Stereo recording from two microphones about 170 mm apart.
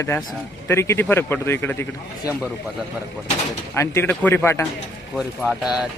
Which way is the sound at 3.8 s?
15° left (ahead or behind).